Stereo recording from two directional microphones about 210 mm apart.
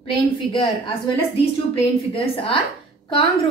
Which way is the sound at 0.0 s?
25° left (ahead or behind).